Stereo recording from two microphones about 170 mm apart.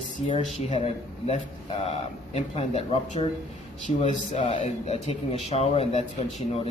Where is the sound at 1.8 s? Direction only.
35° left (ahead or behind).